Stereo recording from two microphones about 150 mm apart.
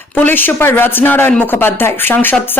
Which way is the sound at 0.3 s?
10° left (ahead or behind).